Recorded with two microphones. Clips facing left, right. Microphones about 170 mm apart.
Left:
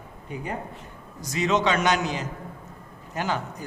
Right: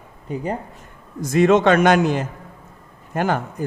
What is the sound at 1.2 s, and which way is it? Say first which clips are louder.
Speech: right 9 dB; 55° right (ahead or behind).